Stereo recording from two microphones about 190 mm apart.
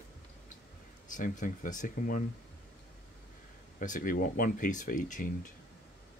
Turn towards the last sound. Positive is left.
turn(degrees=45)  # may be behind; listen again after turning